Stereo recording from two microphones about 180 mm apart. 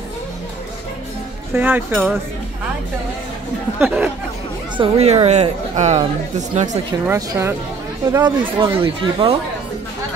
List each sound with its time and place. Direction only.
1.5 s speech: 10° right (ahead or behind)
3.8 s speech: 10° right (ahead or behind)
4.7 s speech: 35° right (ahead or behind)
7.1 s speech: 15° right (ahead or behind)
8.5 s speech: 30° right (ahead or behind)